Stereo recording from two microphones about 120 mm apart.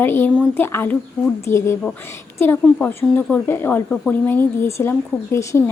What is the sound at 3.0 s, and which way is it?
A woman's voice, 15° left (ahead or behind).